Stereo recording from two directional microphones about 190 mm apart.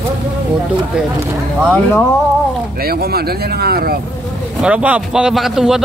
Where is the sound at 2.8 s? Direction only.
55° right (ahead or behind).